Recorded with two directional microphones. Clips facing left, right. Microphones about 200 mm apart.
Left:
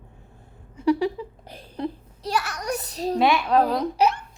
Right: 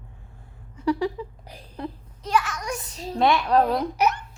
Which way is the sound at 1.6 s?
30° left (ahead or behind).